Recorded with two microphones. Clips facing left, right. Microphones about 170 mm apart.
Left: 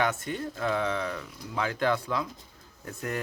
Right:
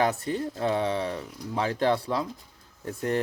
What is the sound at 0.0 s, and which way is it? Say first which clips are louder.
Speech: right 3 dB; 35° right (ahead or behind).